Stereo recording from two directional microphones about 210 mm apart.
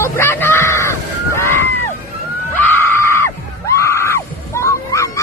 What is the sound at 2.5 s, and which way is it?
Screaming, 10° left (ahead or behind).